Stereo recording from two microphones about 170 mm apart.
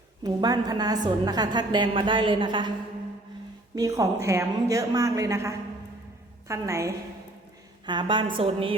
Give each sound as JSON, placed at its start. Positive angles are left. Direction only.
{"t": 0.2, "sound": "a woman's voice", "side_deg": -25}
{"t": 3.8, "sound": "a woman's voice", "side_deg": -20}
{"t": 7.9, "sound": "a woman's voice", "side_deg": -30}